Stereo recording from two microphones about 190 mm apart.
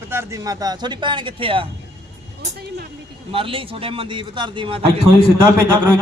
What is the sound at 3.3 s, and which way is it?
A man's voice, 30° right (ahead or behind).